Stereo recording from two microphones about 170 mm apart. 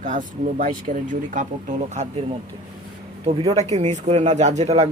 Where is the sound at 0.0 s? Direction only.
50° right (ahead or behind).